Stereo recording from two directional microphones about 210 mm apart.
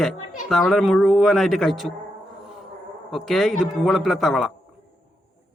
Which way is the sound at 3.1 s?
Centre (ahead or behind).